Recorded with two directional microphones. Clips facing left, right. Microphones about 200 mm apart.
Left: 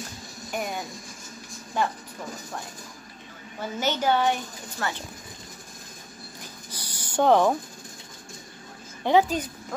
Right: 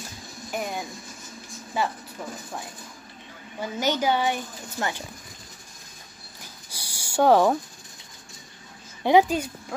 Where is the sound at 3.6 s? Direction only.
10° right (ahead or behind).